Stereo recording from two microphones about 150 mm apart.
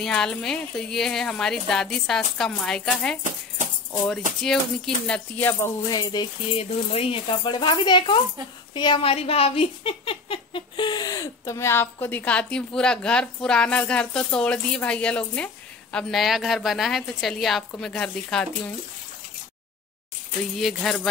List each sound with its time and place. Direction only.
0.0 s a woman's voice: 5° left (ahead or behind)
4.4 s a woman's voice: 5° left (ahead or behind)
5.5 s music: 20° left (ahead or behind)
6.6 s speech: 40° left (ahead or behind); by 18.5 s 5° left (ahead or behind)
20.5 s a woman's voice: 5° left (ahead or behind)